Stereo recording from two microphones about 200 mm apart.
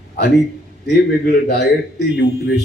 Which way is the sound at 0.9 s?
55° left (ahead or behind).